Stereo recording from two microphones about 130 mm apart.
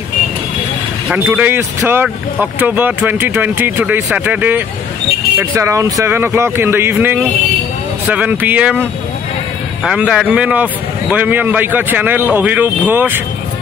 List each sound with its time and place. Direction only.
1.1 s a man's voice: 15° right (ahead or behind)
9.8 s a man's voice: 5° right (ahead or behind)